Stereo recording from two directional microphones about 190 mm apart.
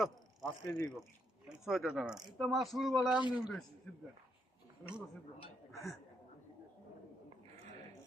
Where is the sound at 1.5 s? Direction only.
Centre (ahead or behind).